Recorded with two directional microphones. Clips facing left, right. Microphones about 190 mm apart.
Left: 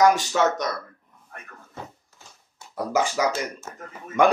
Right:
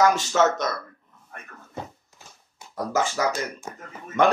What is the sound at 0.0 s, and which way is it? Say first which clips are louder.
Speech: left 1 dB; 15° left (ahead or behind).